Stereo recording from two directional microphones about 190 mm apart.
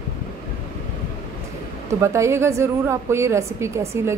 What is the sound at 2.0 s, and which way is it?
A woman's voice, 15° right (ahead or behind).